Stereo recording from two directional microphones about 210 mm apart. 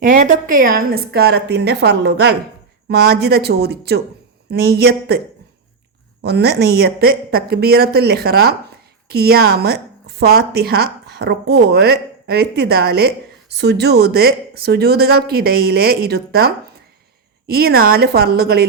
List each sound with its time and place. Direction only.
0.0 s speech: 40° right (ahead or behind)
6.2 s a woman's voice: 50° right (ahead or behind)
17.5 s speech: 45° right (ahead or behind)